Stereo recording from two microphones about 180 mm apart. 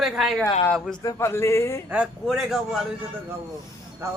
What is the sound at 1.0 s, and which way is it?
Speech, 15° left (ahead or behind).